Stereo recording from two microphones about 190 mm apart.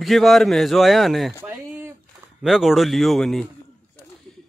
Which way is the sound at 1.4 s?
10° right (ahead or behind).